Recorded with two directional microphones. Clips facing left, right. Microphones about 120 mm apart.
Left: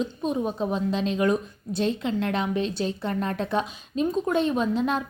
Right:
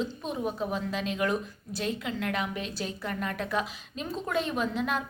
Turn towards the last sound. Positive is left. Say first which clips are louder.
# left 5 dB
turn(degrees=25)  # may be behind; listen again after turning